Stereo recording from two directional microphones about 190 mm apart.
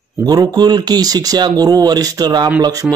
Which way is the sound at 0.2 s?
20° right (ahead or behind).